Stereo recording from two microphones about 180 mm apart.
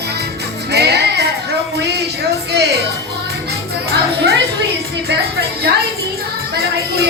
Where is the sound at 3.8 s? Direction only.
65° right (ahead or behind).